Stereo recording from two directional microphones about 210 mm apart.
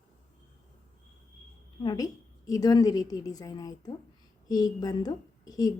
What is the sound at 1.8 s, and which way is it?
A woman's voice, 20° left (ahead or behind).